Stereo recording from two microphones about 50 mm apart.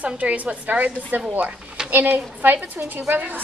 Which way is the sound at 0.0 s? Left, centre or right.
Right.